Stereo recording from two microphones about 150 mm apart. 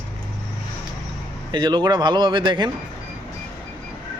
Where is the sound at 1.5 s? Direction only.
30° right (ahead or behind).